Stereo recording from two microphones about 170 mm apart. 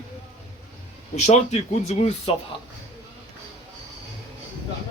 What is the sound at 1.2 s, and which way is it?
Speech, 40° left (ahead or behind).